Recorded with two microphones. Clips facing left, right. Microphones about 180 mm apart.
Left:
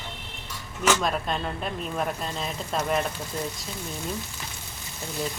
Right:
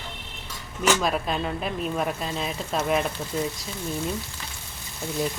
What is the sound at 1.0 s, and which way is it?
Speech, 5° right (ahead or behind).